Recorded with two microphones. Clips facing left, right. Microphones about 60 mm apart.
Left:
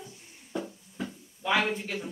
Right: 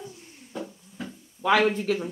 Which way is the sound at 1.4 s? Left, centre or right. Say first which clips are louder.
Right 6 dB; right.